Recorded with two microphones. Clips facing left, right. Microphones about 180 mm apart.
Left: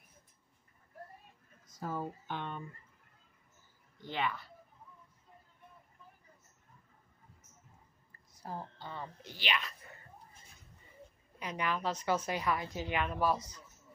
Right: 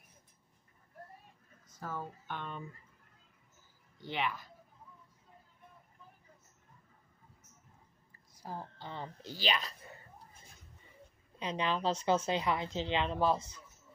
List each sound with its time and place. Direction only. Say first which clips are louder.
1.8 s speech: left 3 dB; 15° left (ahead or behind)
4.1 s speech: even; 10° right (ahead or behind)
8.4 s speech: left 1 dB; 10° right (ahead or behind)
8.9 s speech: right 4 dB; 30° right (ahead or behind)
11.3 s a woman's voice: right 2 dB; 25° right (ahead or behind)